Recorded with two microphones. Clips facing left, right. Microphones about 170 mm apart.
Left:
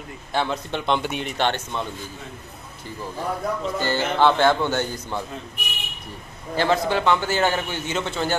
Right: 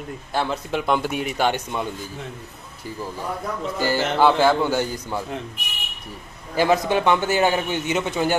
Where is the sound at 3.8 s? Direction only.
10° right (ahead or behind).